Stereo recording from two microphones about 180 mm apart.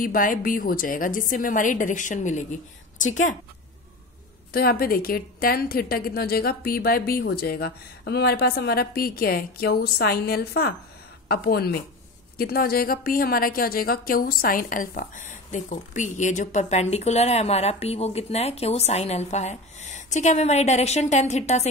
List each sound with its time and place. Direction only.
0.0 s a woman's voice: 50° left (ahead or behind)
4.5 s a woman's voice: 55° left (ahead or behind); by 21.6 s 40° left (ahead or behind)